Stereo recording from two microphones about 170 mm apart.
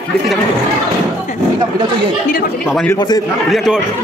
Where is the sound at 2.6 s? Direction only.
Centre (ahead or behind).